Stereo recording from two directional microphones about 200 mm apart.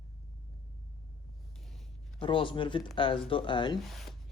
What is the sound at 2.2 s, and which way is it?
Speech, 25° left (ahead or behind).